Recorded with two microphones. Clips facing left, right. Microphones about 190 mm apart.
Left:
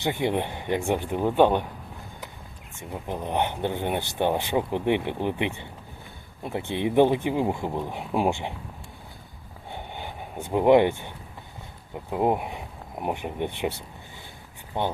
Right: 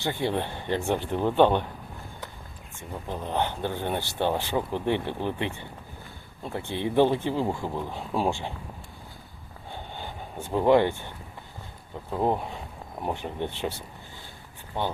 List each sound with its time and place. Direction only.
0.0 s speech: 20° left (ahead or behind)
2.9 s speech: 15° left (ahead or behind)
9.7 s a sound: 15° left (ahead or behind)
11.9 s speech: 15° left (ahead or behind)
14.8 s speech: 15° left (ahead or behind)